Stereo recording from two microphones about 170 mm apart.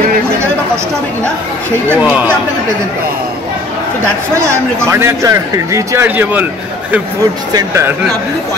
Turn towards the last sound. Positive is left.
turn(degrees=-15)  # may be behind; listen again after turning